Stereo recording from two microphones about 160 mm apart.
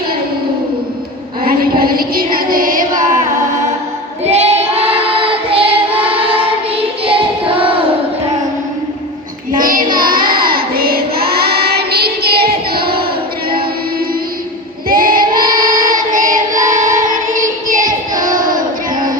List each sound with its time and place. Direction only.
1.5 s a sound: 65° right (ahead or behind)
4.3 s child singing: 40° right (ahead or behind)
6.0 s choir: 35° right (ahead or behind)
9.5 s child singing: 60° right (ahead or behind)
14.8 s choir: 65° right (ahead or behind)
16.6 s music: 50° right (ahead or behind)